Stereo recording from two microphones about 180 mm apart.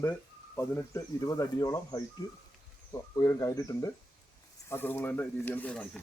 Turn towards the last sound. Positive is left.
turn(degrees=5)  # may be behind; listen again after turning